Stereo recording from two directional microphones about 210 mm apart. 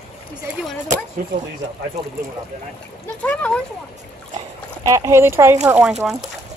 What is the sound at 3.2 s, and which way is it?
Speech, 5° left (ahead or behind).